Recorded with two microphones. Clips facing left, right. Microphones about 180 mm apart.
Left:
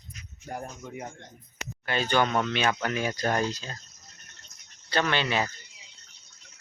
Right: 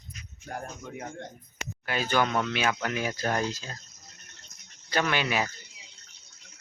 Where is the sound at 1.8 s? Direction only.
5° right (ahead or behind).